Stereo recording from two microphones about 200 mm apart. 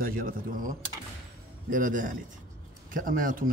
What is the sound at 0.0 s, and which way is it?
A man's voice, 45° right (ahead or behind).